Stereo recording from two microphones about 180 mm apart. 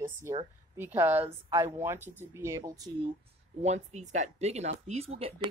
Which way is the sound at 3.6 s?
40° right (ahead or behind).